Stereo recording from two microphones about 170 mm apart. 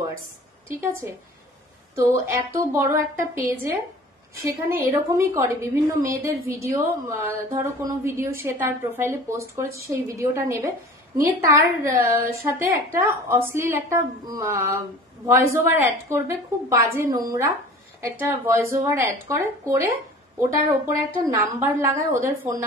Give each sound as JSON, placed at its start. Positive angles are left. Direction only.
{"t": 0.7, "sound": "a woman's voice", "side_deg": -15}
{"t": 4.5, "sound": "a woman's voice", "side_deg": -15}